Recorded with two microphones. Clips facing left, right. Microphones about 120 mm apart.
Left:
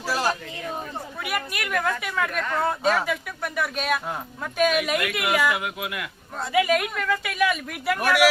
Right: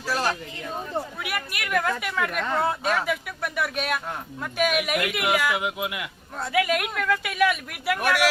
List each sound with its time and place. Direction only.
0.1 s a sound: 10° left (ahead or behind)
1.2 s speech: centre (ahead or behind)
5.5 s speech: 20° right (ahead or behind)
6.4 s speech: centre (ahead or behind)